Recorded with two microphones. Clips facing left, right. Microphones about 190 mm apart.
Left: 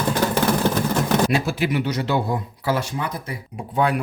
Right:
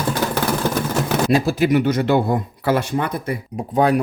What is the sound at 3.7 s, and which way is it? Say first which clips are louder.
Speech: right 4 dB; 40° right (ahead or behind).